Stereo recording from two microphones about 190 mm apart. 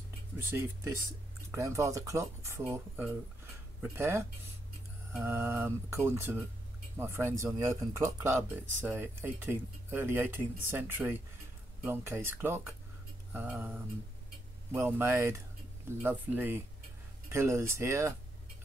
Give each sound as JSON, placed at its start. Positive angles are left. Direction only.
{"t": 0.4, "sound": "speech", "side_deg": -10}
{"t": 15.0, "sound": "speech", "side_deg": -15}